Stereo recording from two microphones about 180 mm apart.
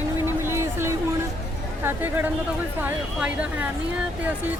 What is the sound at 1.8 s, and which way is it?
Speech, 10° right (ahead or behind).